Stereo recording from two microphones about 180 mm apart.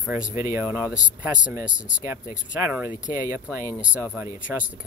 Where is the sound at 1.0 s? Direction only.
5° right (ahead or behind).